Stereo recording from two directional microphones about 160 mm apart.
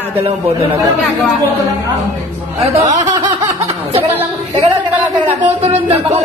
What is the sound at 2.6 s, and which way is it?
Speech, 40° right (ahead or behind).